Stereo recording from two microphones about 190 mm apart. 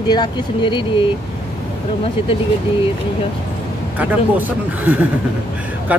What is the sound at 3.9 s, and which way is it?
Speech, 10° right (ahead or behind).